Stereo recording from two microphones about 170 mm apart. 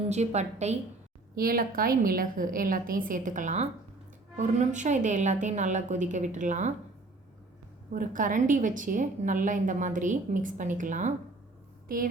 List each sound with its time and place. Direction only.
0.1 s a woman's voice: 40° right (ahead or behind)
1.4 s a woman's voice: 60° right (ahead or behind)
7.9 s a woman's voice: 50° right (ahead or behind)